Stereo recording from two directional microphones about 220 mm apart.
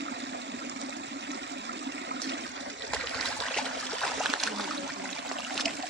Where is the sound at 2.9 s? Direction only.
5° left (ahead or behind).